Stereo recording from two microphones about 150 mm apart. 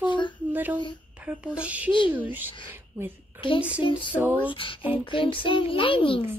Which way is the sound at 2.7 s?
15° right (ahead or behind).